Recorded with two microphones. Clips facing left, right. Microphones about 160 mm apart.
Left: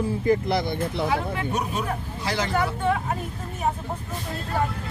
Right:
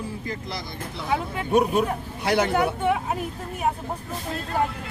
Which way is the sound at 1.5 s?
55° right (ahead or behind).